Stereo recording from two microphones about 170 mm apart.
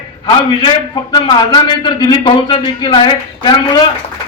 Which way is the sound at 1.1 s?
25° left (ahead or behind).